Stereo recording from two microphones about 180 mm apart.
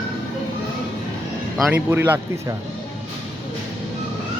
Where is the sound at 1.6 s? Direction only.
10° right (ahead or behind).